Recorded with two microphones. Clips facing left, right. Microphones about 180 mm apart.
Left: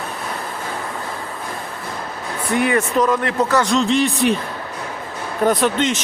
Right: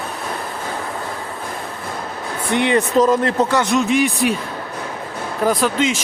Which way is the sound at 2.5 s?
25° right (ahead or behind).